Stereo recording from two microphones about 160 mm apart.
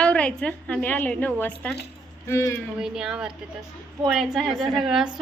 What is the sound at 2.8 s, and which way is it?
A woman's voice, 5° right (ahead or behind).